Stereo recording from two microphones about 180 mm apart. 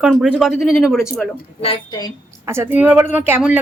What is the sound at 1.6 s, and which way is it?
Speech, 25° left (ahead or behind).